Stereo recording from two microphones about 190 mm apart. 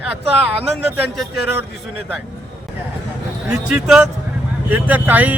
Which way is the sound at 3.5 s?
5° right (ahead or behind).